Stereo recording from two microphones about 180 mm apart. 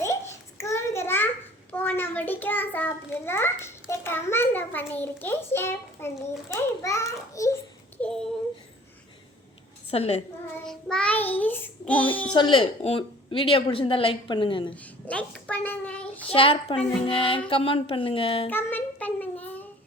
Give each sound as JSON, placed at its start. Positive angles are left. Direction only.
{"t": 0.6, "sound": "a sound", "side_deg": 15}
{"t": 1.7, "sound": "a child's voice", "side_deg": 10}
{"t": 8.0, "sound": "a sound", "side_deg": 5}
{"t": 9.9, "sound": "a woman's voice", "side_deg": 35}
{"t": 10.7, "sound": "child singing", "side_deg": 5}
{"t": 11.3, "sound": "a child's voice", "side_deg": 10}
{"t": 12.3, "sound": "a woman's voice", "side_deg": 25}
{"t": 15.0, "sound": "a sound", "side_deg": 5}
{"t": 16.3, "sound": "a woman's voice", "side_deg": 30}
{"t": 18.4, "sound": "music", "side_deg": 10}